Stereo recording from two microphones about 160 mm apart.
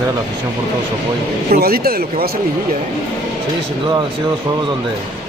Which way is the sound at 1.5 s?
70° right (ahead or behind).